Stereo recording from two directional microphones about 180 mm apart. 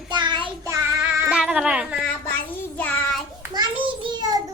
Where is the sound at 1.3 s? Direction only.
5° right (ahead or behind).